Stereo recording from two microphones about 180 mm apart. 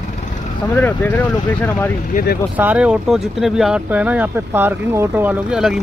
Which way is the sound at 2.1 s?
55° left (ahead or behind).